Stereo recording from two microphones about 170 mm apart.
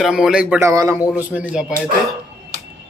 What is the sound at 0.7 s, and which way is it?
Speech, 20° right (ahead or behind).